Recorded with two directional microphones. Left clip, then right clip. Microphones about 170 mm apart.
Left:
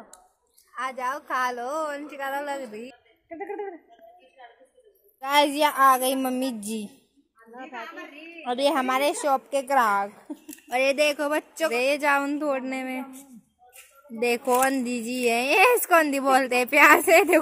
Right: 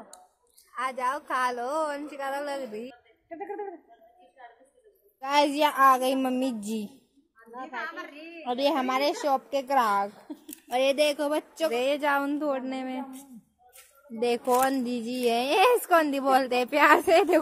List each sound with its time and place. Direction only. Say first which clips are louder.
0.7 s a woman's voice: even; 10° right (ahead or behind)
3.3 s a woman's voice: left 2 dB; 35° left (ahead or behind)
5.2 s speech: left 2 dB; centre (ahead or behind)
14.2 s speech: left 2 dB; 5° left (ahead or behind)